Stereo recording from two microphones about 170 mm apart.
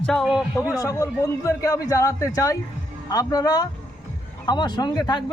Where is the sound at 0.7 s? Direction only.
20° left (ahead or behind).